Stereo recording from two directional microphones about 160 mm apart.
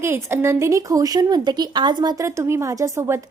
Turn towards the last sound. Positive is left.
turn(degrees=-15)  # may be behind; listen again after turning